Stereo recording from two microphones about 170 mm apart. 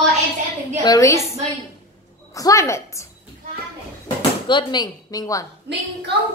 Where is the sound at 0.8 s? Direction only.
20° left (ahead or behind).